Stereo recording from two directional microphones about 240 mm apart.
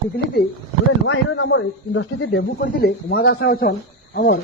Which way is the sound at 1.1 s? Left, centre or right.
Left.